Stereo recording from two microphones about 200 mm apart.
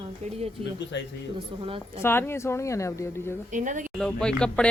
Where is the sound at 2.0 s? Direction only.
10° left (ahead or behind).